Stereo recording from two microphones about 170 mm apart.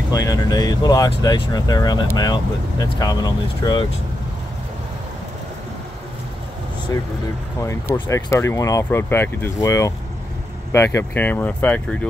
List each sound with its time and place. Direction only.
0.1 s speech: 20° left (ahead or behind)
7.6 s speech: 15° left (ahead or behind)